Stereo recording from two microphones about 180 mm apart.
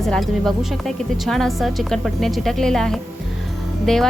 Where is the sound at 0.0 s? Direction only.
Centre (ahead or behind).